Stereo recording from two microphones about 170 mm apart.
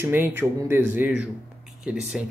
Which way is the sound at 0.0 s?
10° right (ahead or behind).